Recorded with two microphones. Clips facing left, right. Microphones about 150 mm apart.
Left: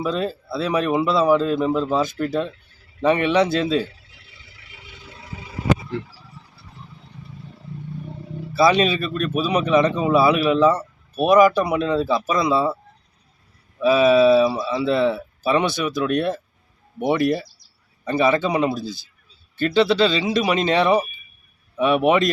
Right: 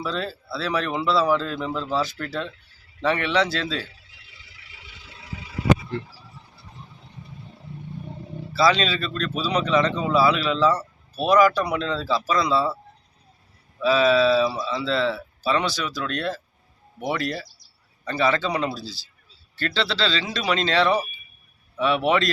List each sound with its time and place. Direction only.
0.0 s speech: 20° left (ahead or behind)
5.0 s vehicle: 45° left (ahead or behind)
8.5 s speech: 20° left (ahead or behind)
18.7 s speech: 50° left (ahead or behind)
19.5 s speech: 15° left (ahead or behind)